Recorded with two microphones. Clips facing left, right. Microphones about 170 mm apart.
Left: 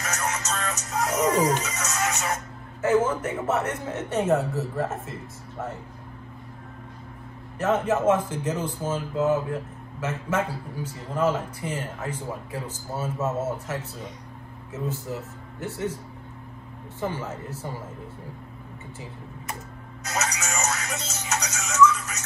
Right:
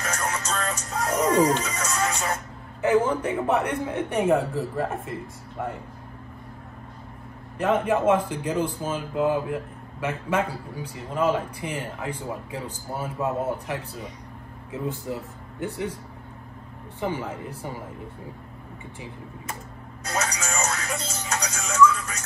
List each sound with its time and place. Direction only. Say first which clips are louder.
0.1 s music: even; 30° right (ahead or behind)
1.6 s speech: right 2 dB; 30° right (ahead or behind)
2.8 s speech: right 1 dB; 15° right (ahead or behind)
7.5 s speech: right 1 dB; 15° right (ahead or behind)
17.0 s speech: right 2 dB; 15° right (ahead or behind)
20.0 s music: right 1 dB; 30° right (ahead or behind)